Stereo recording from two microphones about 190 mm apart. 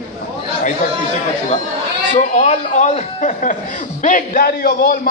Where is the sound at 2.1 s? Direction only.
40° left (ahead or behind).